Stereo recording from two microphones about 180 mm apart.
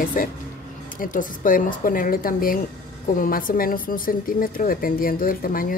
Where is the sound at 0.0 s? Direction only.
50° left (ahead or behind).